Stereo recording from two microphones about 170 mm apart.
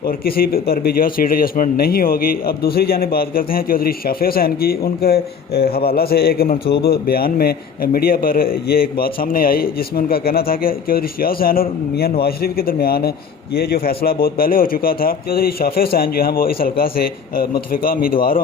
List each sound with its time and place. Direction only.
0.0 s a man's voice: 60° left (ahead or behind)